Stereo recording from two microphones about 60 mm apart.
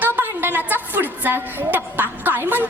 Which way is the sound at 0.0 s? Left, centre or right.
Right.